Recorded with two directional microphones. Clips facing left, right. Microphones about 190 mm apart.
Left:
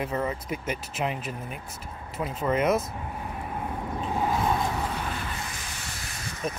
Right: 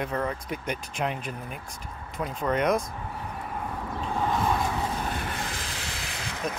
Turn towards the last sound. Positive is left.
turn(degrees=-90)